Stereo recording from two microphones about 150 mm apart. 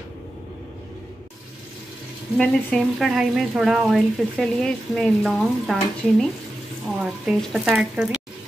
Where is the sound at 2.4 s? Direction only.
5° left (ahead or behind).